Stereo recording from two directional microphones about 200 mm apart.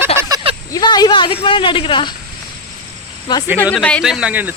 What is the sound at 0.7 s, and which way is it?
Speech, 20° left (ahead or behind).